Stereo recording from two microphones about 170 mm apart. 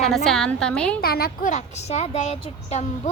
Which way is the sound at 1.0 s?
65° left (ahead or behind).